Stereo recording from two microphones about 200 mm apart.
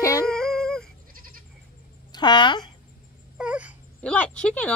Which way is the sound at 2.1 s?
20° left (ahead or behind).